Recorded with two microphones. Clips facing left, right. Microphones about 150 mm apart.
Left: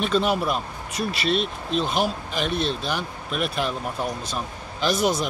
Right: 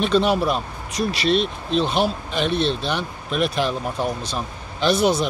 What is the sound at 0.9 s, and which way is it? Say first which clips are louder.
Speech: right 4 dB; 35° right (ahead or behind).